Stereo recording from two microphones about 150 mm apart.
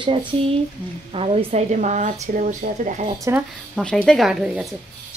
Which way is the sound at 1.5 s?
55° right (ahead or behind).